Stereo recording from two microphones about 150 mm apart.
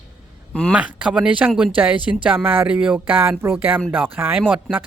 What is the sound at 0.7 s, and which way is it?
Speech, 10° right (ahead or behind).